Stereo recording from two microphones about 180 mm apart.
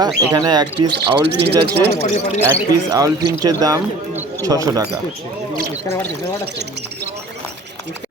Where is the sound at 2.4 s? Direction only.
20° right (ahead or behind).